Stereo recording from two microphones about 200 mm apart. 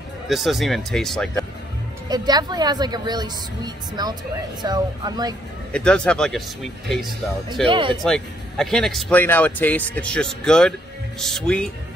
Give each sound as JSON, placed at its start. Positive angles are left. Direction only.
{"t": 0.3, "sound": "speech", "side_deg": 0}
{"t": 2.0, "sound": "a woman's voice", "side_deg": -20}
{"t": 5.7, "sound": "speech", "side_deg": 5}
{"t": 7.6, "sound": "a woman's voice", "side_deg": -25}
{"t": 8.0, "sound": "speech", "side_deg": 0}